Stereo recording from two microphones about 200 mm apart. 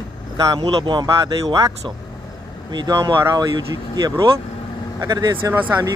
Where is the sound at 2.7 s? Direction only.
20° right (ahead or behind).